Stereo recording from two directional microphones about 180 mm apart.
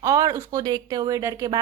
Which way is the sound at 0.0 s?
20° right (ahead or behind).